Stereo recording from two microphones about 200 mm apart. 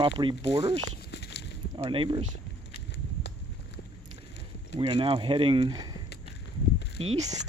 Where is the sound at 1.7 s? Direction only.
25° right (ahead or behind).